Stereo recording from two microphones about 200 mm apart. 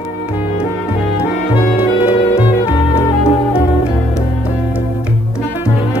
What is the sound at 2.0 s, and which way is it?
Music, 30° left (ahead or behind).